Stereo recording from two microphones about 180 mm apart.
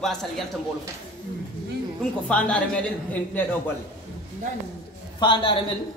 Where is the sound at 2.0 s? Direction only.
5° left (ahead or behind).